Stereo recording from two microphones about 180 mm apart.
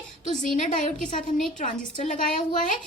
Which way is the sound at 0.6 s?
45° left (ahead or behind).